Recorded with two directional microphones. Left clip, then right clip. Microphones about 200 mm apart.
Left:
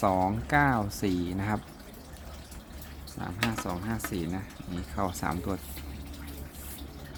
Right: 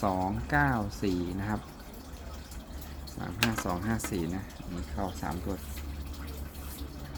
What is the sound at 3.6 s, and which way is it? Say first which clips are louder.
Speech: right 1 dB; centre (ahead or behind).